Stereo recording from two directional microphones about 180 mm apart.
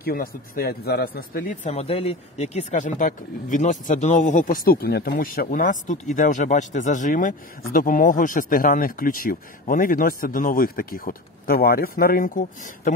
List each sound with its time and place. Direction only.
0.0 s speech: 55° left (ahead or behind)